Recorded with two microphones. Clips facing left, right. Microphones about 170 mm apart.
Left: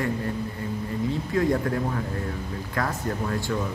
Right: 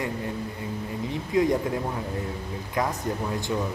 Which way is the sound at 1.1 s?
20° right (ahead or behind).